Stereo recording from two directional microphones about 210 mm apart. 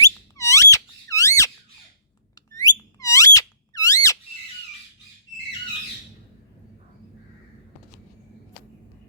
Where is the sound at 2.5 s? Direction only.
15° left (ahead or behind).